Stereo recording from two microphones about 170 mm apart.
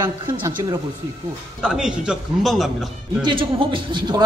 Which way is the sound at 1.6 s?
5° right (ahead or behind).